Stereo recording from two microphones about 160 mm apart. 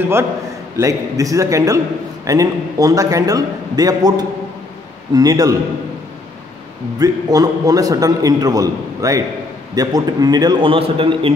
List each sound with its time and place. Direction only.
0.7 s a man's voice: 20° right (ahead or behind)
7.0 s a man's voice: 25° right (ahead or behind)